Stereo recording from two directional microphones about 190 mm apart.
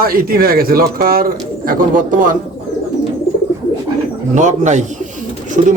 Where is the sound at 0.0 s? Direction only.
50° right (ahead or behind).